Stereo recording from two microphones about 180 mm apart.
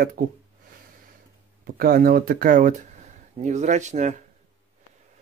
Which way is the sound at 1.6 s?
55° right (ahead or behind).